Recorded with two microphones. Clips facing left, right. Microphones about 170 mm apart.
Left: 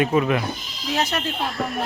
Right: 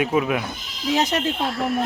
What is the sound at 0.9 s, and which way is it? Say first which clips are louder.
Speech: right 3 dB; 20° right (ahead or behind).